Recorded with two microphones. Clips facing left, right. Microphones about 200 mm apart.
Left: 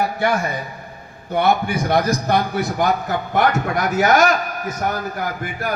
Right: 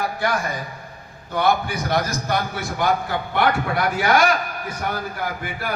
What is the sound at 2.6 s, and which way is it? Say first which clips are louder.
Speech: left 3 dB; 45° left (ahead or behind).